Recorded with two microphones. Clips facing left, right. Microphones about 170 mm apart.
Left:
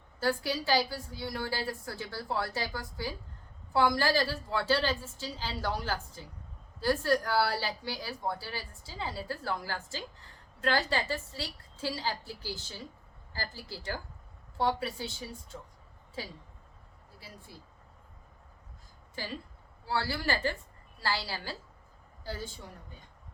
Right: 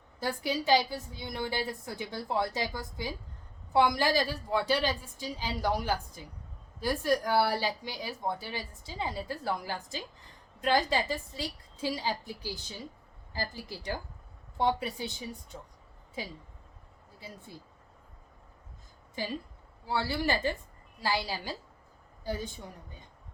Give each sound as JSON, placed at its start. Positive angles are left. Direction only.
{"t": 0.2, "sound": "a woman's voice", "side_deg": -20}
{"t": 19.8, "sound": "a woman's voice", "side_deg": -20}